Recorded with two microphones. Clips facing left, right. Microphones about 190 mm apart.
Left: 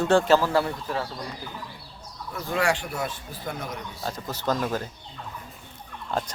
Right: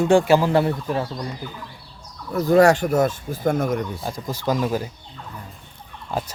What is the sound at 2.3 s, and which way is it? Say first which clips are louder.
Speech: right 11 dB; 45° right (ahead or behind).